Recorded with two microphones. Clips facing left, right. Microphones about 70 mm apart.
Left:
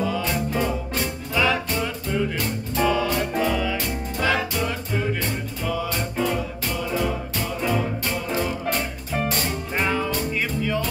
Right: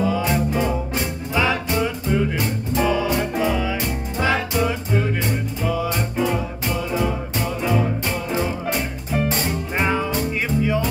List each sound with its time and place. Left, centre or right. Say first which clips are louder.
0.0 s music: right 4 dB; centre
8.3 s music: right 1 dB; centre
9.1 s music: right 3 dB; centre
9.8 s music: right 2 dB; centre